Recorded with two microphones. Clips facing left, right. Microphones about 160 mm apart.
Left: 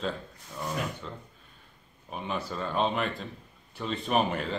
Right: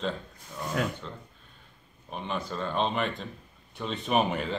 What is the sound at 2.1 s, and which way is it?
A man's voice, 5° left (ahead or behind).